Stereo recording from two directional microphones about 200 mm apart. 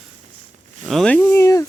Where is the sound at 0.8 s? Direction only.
Centre (ahead or behind).